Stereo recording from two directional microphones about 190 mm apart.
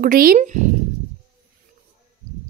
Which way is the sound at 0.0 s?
50° right (ahead or behind).